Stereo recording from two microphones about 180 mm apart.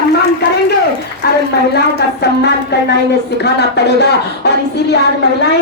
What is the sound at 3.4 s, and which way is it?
Speech, 70° left (ahead or behind).